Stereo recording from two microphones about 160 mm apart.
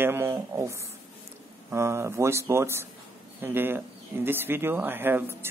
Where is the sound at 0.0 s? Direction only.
15° right (ahead or behind).